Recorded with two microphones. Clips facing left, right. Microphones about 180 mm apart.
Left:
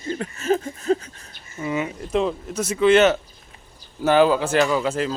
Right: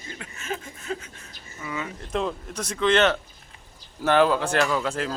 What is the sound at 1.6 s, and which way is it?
Speech, 20° left (ahead or behind).